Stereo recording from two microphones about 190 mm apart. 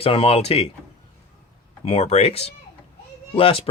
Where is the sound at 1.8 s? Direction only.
35° left (ahead or behind).